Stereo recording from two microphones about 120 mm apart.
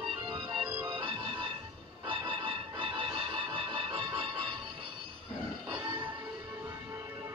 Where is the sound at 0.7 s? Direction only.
20° right (ahead or behind).